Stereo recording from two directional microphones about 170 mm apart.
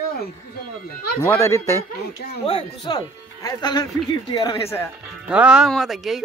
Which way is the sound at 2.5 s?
30° left (ahead or behind).